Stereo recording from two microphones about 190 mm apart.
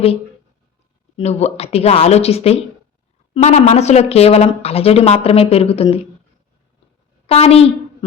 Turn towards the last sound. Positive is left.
turn(degrees=30)  # may be behind; listen again after turning